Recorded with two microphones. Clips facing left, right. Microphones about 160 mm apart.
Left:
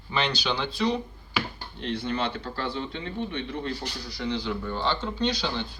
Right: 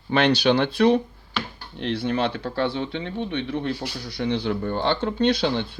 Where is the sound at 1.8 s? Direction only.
70° right (ahead or behind).